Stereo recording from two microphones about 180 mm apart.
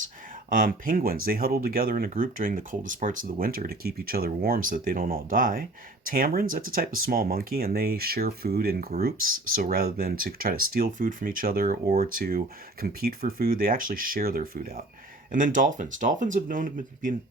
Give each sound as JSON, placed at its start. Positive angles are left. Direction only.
{"t": 0.5, "sound": "speech", "side_deg": -50}